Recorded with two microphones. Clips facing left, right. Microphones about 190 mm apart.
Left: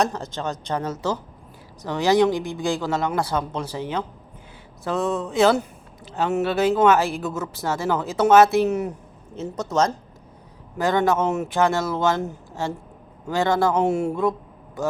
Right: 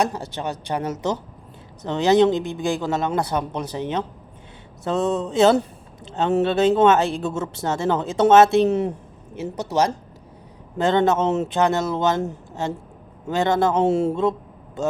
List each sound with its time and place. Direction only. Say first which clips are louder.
0.6 s speech: right 2 dB; 15° right (ahead or behind)
10.8 s a man's voice: right 2 dB; 25° right (ahead or behind)